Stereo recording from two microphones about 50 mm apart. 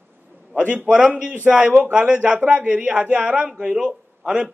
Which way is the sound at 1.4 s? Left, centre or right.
Right.